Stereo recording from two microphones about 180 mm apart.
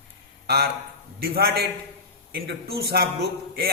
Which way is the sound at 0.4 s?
65° right (ahead or behind).